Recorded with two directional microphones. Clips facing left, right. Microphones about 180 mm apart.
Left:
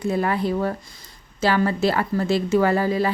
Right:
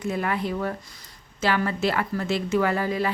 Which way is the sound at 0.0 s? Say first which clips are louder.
Left 4 dB; 35° left (ahead or behind).